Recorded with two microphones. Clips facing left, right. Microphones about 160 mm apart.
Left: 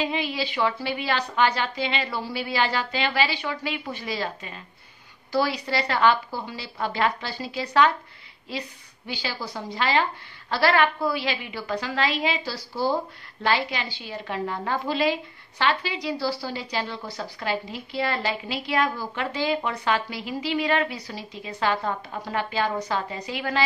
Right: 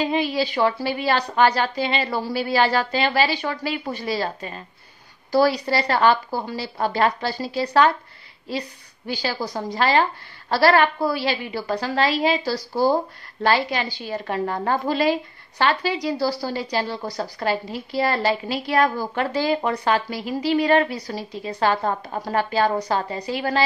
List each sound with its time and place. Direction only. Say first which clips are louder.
0.0 s a woman's voice: right 5 dB; 40° right (ahead or behind)